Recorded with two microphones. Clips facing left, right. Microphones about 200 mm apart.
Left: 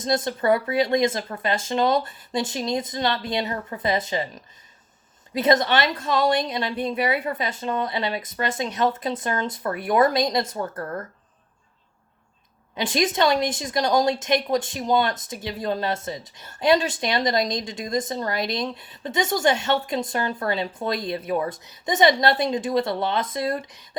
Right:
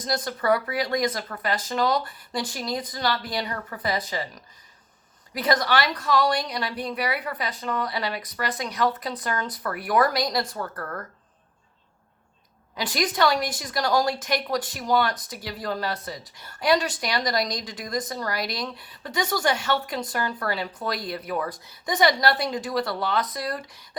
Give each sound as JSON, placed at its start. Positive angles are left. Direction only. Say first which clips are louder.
{"t": 0.0, "sound": "a woman's voice", "louder": "left 4 dB", "side_deg": 25}
{"t": 12.7, "sound": "a woman's voice", "louder": "left 4 dB", "side_deg": 25}